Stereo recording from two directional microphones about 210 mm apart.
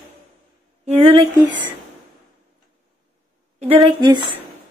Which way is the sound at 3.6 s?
25° right (ahead or behind).